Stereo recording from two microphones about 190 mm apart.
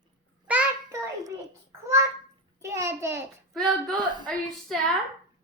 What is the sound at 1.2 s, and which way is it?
Babbling, 15° right (ahead or behind).